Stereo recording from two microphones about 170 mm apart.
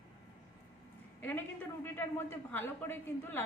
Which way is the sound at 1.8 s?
15° left (ahead or behind).